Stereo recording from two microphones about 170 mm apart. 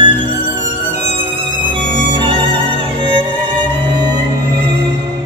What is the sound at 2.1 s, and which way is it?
Music, 30° right (ahead or behind).